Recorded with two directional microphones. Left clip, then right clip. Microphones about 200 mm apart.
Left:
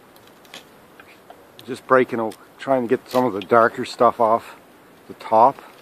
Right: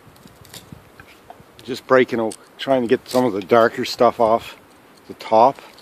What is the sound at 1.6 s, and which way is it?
Speech, 35° right (ahead or behind).